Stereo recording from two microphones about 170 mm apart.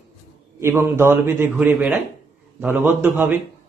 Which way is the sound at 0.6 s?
15° right (ahead or behind).